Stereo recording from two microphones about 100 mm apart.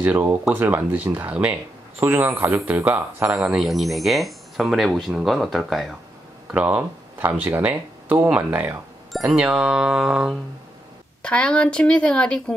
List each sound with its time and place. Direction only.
0.0 s speech: 15° right (ahead or behind)
3.3 s speech: 5° right (ahead or behind)
6.5 s speech: 15° right (ahead or behind)
11.2 s speech: 10° left (ahead or behind)